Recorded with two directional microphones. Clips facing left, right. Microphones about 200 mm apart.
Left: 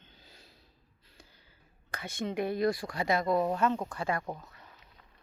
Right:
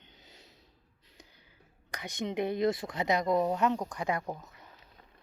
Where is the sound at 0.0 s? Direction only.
20° right (ahead or behind).